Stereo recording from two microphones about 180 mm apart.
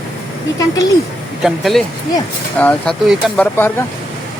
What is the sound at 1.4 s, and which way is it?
Speech, centre (ahead or behind).